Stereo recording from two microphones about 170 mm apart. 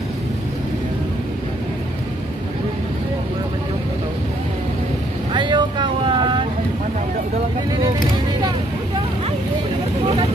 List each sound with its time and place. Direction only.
5.3 s vehicle: 25° right (ahead or behind)